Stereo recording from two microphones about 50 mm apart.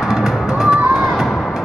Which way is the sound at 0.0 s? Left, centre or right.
Centre.